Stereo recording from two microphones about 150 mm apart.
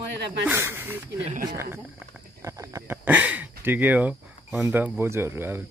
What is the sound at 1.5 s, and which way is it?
Speech, 15° right (ahead or behind).